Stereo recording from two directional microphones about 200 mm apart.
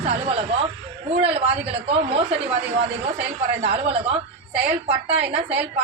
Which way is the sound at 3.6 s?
30° right (ahead or behind).